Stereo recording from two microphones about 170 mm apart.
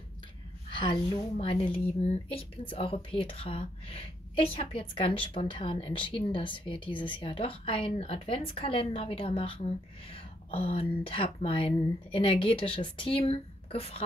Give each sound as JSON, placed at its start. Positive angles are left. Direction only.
{"t": 0.7, "sound": "speech", "side_deg": 30}